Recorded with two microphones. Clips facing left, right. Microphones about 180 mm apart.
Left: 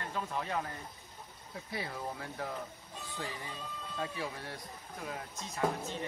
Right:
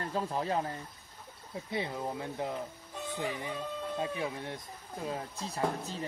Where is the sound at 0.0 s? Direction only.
35° right (ahead or behind).